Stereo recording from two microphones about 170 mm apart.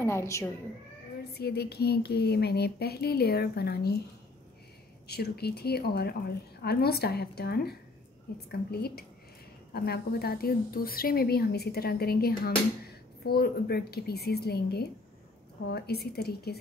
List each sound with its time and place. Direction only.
0.0 s speech: 15° left (ahead or behind)
1.3 s a woman's voice: 70° left (ahead or behind)
5.0 s a woman's voice: 70° left (ahead or behind)